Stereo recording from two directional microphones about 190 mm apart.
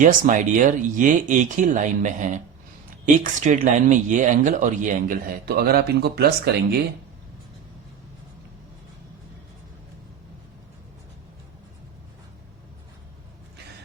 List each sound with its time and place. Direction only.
0.0 s speech: 45° right (ahead or behind)
3.4 s speech: 40° right (ahead or behind); by 6.7 s 55° right (ahead or behind)